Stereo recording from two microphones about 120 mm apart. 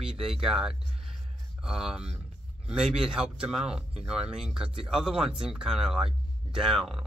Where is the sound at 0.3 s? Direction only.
5° right (ahead or behind).